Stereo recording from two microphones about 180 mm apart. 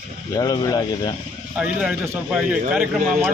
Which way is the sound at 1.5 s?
5° right (ahead or behind).